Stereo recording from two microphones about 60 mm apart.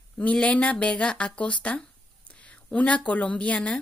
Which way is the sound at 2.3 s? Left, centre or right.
Left.